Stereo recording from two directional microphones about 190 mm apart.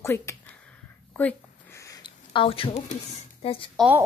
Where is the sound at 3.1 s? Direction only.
30° left (ahead or behind).